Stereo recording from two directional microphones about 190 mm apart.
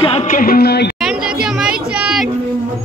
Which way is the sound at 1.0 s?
5° right (ahead or behind).